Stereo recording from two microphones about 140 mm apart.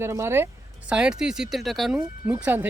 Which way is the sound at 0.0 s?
20° right (ahead or behind).